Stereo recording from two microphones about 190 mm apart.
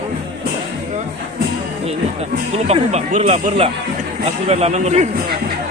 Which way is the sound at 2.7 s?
35° right (ahead or behind).